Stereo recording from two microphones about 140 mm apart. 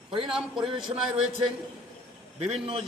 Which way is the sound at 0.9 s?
30° right (ahead or behind).